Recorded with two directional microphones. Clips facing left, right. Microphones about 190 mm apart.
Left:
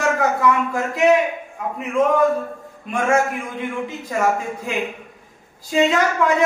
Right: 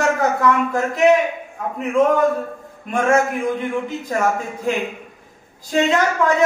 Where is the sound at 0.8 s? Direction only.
Centre (ahead or behind).